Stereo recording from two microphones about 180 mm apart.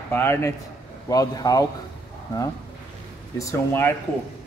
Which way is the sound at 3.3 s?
15° left (ahead or behind).